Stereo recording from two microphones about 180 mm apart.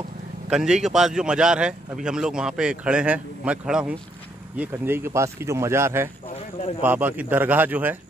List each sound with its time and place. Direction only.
0.5 s a man's voice: 5° right (ahead or behind)
6.2 s a sound: 35° left (ahead or behind)
6.8 s speech: 10° right (ahead or behind)